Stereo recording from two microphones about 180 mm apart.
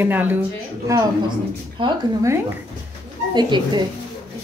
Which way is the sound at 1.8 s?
15° right (ahead or behind).